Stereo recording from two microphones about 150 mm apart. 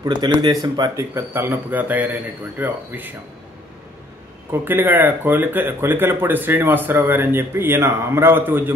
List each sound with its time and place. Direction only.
0.0 s speech: 30° right (ahead or behind)
1.1 s speech: 15° right (ahead or behind)
4.5 s speech: 15° right (ahead or behind)